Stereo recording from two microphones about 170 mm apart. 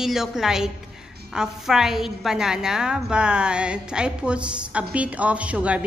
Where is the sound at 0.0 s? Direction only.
Centre (ahead or behind).